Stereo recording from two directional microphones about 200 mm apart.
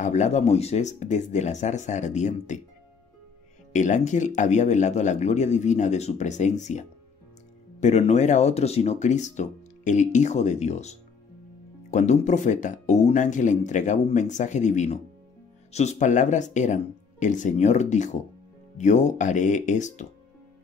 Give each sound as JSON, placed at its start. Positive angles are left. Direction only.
{"t": 0.0, "sound": "speech", "side_deg": 35}
{"t": 3.7, "sound": "speech", "side_deg": 35}